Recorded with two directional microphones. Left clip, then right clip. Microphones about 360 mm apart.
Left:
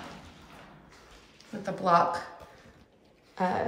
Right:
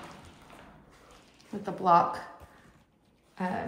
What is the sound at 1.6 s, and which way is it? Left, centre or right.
Speech, centre.